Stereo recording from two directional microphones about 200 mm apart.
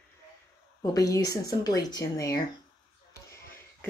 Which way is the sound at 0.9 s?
15° left (ahead or behind).